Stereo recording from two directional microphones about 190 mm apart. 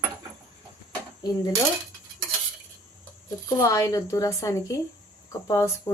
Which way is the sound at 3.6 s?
15° left (ahead or behind).